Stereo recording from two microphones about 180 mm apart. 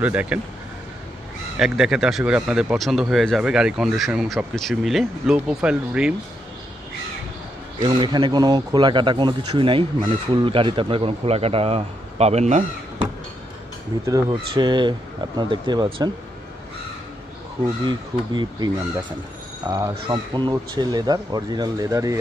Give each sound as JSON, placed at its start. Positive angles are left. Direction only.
{"t": 0.0, "sound": "speech", "side_deg": -10}
{"t": 1.6, "sound": "speech", "side_deg": -5}
{"t": 7.8, "sound": "a man's voice", "side_deg": -25}
{"t": 14.0, "sound": "a man's voice", "side_deg": -25}
{"t": 17.8, "sound": "a man's voice", "side_deg": -25}
{"t": 19.9, "sound": "a man's voice", "side_deg": -25}